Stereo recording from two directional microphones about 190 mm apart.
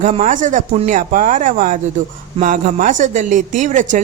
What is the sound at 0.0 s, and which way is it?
Speech, 40° right (ahead or behind).